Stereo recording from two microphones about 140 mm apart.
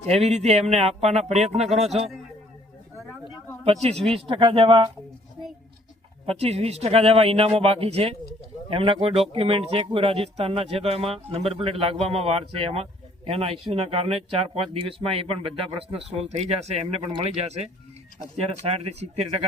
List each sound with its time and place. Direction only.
0.1 s speech: 50° right (ahead or behind)
3.6 s speech: 50° right (ahead or behind)
6.2 s speech: 45° right (ahead or behind)
18.3 s speech: 50° right (ahead or behind)